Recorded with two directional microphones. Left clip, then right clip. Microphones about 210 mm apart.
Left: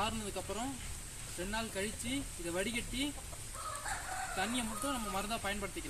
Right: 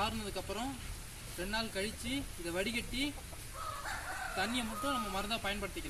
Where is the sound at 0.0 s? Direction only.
5° left (ahead or behind).